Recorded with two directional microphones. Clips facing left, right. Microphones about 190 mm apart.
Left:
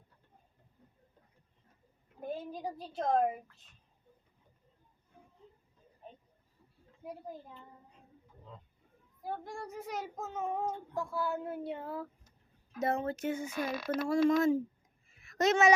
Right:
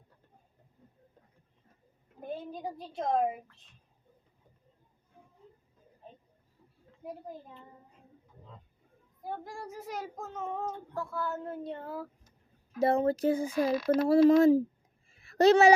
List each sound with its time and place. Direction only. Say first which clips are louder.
2.4 s a woman's voice: right 1 dB; centre (ahead or behind)
9.4 s child singing: even; centre (ahead or behind)
12.8 s speech: right 7 dB; 35° right (ahead or behind)
15.2 s a sound: right 6 dB; 35° right (ahead or behind)